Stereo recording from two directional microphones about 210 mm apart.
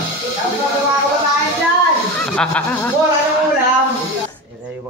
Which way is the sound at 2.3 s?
5° left (ahead or behind).